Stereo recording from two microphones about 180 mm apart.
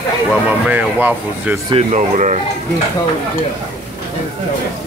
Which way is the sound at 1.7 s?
40° right (ahead or behind).